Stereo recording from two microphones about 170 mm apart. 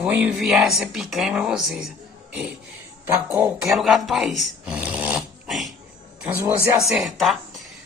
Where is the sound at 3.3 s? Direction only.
15° right (ahead or behind).